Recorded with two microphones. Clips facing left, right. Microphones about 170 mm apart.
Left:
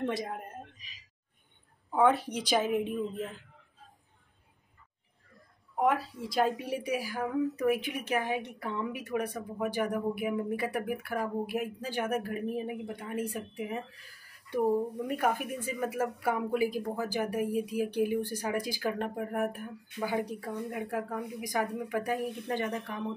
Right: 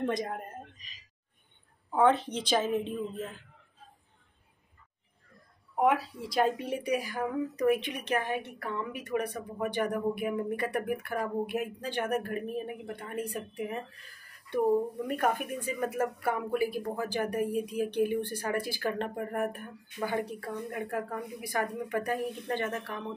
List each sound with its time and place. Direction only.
0.0 s a woman's voice: centre (ahead or behind)
2.0 s a woman's voice: 10° left (ahead or behind)
5.8 s a woman's voice: centre (ahead or behind)
15.0 s a woman's voice: 10° left (ahead or behind)